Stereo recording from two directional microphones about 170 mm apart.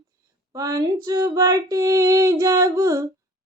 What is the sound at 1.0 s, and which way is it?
Female singing, 20° right (ahead or behind).